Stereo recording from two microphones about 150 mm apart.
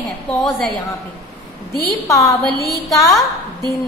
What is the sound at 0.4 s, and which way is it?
Speech, 5° left (ahead or behind).